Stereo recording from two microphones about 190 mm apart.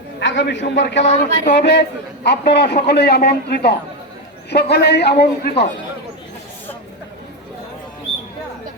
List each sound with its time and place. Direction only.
0.2 s a man's voice: 75° left (ahead or behind)
1.2 s a man's voice: 55° left (ahead or behind)